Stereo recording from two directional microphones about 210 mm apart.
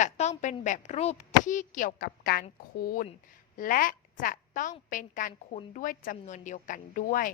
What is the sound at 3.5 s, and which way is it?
A woman's voice, 40° left (ahead or behind).